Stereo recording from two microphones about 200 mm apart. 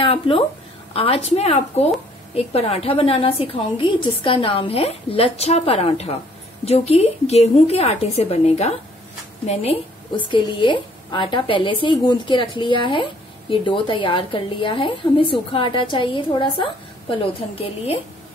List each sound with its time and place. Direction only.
0.0 s a woman's voice: 25° left (ahead or behind)